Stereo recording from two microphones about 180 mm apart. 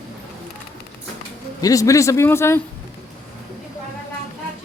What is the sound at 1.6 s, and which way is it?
Speech, 20° left (ahead or behind).